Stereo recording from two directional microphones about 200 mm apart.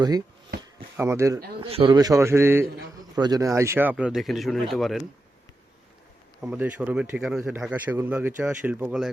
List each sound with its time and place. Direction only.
0.5 s a sound: 50° right (ahead or behind)
0.9 s speech: 15° right (ahead or behind)
1.6 s speech: 30° right (ahead or behind); by 5.0 s centre (ahead or behind)
6.4 s speech: 5° right (ahead or behind)